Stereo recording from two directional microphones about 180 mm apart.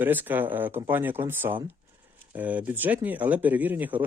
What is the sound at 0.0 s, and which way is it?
Speech, 10° right (ahead or behind).